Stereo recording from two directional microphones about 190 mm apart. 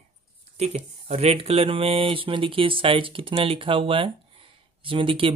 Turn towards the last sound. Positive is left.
turn(degrees=-30)  # may be behind; listen again after turning